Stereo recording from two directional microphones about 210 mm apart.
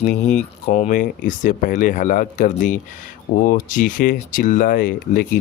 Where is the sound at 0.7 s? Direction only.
35° left (ahead or behind).